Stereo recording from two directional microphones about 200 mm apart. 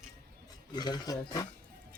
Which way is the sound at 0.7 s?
20° left (ahead or behind).